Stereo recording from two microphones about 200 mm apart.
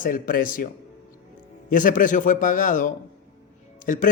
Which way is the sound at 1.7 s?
40° left (ahead or behind).